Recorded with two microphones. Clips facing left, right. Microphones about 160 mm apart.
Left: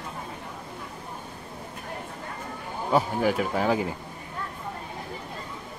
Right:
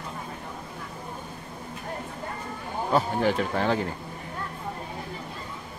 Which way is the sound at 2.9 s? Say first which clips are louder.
Left 1 dB; 5° left (ahead or behind).